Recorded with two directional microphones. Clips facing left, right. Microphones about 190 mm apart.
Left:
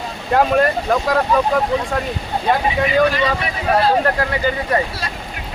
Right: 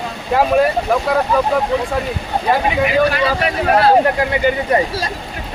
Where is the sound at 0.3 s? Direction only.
5° right (ahead or behind).